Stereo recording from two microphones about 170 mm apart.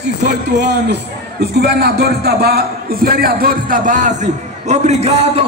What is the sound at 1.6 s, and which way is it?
A man's voice, 70° right (ahead or behind).